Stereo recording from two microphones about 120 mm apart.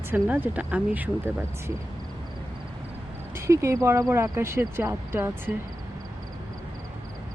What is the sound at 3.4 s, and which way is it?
Speech, 25° right (ahead or behind).